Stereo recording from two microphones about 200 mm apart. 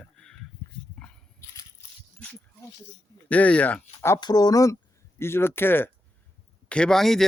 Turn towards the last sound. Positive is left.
turn(degrees=0)  # may be behind; listen again after turning